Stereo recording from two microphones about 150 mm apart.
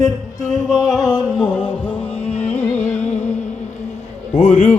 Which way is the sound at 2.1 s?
40° left (ahead or behind).